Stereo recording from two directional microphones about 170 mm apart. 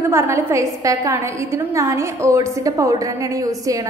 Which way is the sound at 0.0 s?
15° right (ahead or behind).